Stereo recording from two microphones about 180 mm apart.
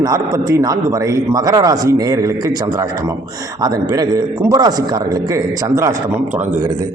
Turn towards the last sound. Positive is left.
turn(degrees=-15)  # may be behind; listen again after turning